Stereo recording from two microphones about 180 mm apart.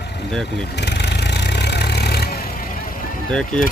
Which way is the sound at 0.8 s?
70° left (ahead or behind).